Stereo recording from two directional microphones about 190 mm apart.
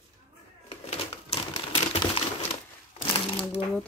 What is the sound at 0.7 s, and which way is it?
Typewriter, 30° left (ahead or behind).